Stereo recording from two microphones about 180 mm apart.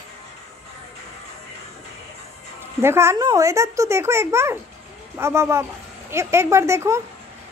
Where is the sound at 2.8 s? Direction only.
15° right (ahead or behind).